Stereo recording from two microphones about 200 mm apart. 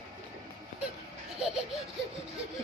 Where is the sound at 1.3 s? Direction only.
Centre (ahead or behind).